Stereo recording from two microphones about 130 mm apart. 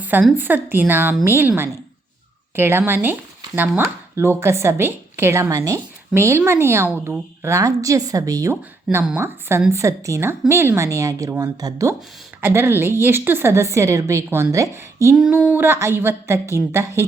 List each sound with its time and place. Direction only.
0.0 s a sound: 10° right (ahead or behind)
0.3 s a woman's voice: 15° right (ahead or behind)
15.1 s a woman's voice: 5° right (ahead or behind)